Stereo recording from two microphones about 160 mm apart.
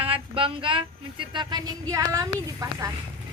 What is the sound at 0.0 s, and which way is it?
Speech, 35° right (ahead or behind).